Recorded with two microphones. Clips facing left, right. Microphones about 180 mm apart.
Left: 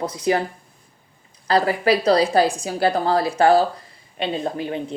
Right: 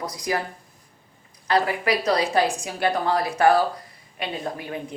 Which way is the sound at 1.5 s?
35° left (ahead or behind).